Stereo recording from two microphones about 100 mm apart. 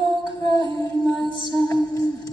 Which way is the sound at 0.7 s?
40° left (ahead or behind).